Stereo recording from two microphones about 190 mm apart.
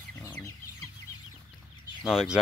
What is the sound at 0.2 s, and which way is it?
Chicken, 15° left (ahead or behind).